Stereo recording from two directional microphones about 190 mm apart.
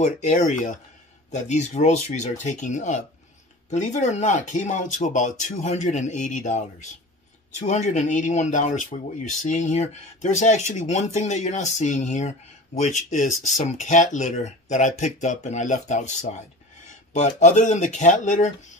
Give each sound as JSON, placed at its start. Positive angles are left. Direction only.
{"t": 0.0, "sound": "speech", "side_deg": 40}